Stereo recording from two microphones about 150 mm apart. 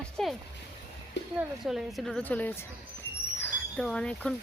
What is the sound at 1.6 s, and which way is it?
A woman's voice, centre (ahead or behind).